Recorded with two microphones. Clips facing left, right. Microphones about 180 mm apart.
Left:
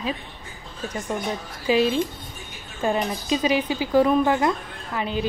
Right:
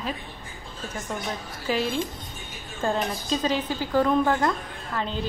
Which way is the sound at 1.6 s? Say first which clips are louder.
Left 6 dB; 15° left (ahead or behind).